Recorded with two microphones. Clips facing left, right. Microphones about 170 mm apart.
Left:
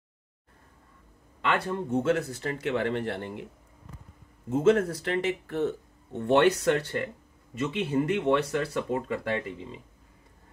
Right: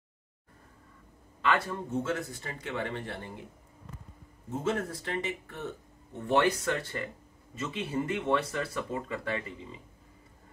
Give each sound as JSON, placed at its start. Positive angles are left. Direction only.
{"t": 1.4, "sound": "speech", "side_deg": 65}
{"t": 4.5, "sound": "speech", "side_deg": 90}